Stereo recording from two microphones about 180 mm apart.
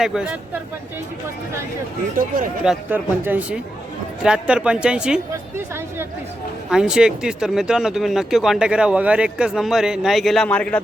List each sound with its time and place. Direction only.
0.0 s speech: 5° right (ahead or behind)
2.1 s speech: 50° right (ahead or behind)
2.6 s a man's voice: 10° right (ahead or behind); by 10.8 s 5° left (ahead or behind)